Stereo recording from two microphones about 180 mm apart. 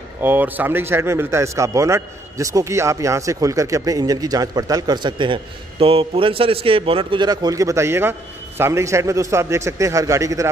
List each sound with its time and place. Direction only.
0.2 s a man's voice: 10° right (ahead or behind)